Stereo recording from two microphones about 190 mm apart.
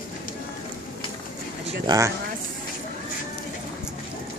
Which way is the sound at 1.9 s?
25° right (ahead or behind).